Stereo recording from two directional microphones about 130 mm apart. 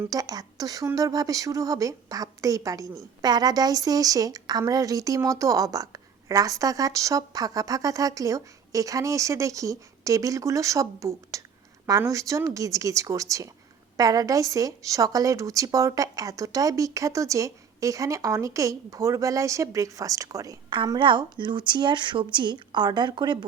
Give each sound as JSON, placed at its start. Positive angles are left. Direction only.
{"t": 0.0, "sound": "a woman's voice", "side_deg": -30}
{"t": 20.7, "sound": "a woman's voice", "side_deg": -35}